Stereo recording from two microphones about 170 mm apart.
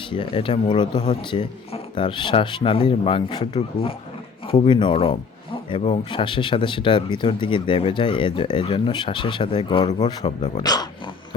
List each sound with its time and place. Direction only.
0.1 s speech: 30° left (ahead or behind)
10.2 s speech: 35° left (ahead or behind)
10.6 s dog: 25° left (ahead or behind)